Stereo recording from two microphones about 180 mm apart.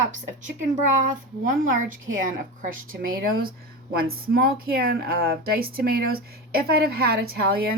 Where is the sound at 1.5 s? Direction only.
50° right (ahead or behind).